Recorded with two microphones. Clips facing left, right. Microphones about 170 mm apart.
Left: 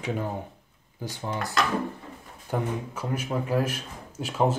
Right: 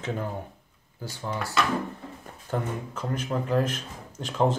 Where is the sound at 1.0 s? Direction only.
15° left (ahead or behind).